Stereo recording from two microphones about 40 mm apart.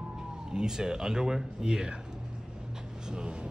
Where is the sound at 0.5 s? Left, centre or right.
Centre.